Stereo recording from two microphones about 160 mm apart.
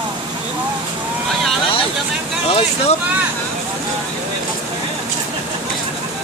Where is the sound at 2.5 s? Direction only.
40° left (ahead or behind).